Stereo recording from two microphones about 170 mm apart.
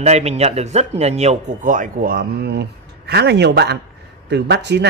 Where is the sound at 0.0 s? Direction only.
40° right (ahead or behind); by 3.8 s 80° right.